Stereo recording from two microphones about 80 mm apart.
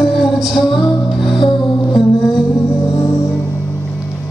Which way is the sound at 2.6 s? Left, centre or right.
Left.